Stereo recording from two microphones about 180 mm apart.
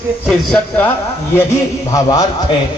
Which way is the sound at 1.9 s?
20° left (ahead or behind).